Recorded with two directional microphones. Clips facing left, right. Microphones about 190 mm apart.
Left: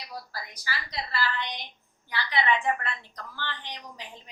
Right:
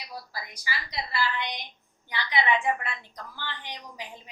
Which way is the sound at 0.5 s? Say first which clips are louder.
Right 1 dB; 15° right (ahead or behind).